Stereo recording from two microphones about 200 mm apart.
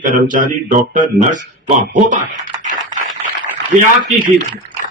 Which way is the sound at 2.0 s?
40° right (ahead or behind).